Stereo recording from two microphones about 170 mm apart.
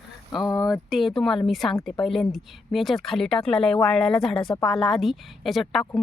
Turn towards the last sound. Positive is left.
turn(degrees=0)  # may be behind; listen again after turning